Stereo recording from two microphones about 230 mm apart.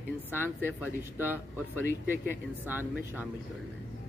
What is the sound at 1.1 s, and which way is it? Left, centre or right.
Speech, centre.